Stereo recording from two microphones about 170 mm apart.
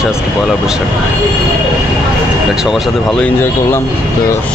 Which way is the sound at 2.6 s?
Centre (ahead or behind).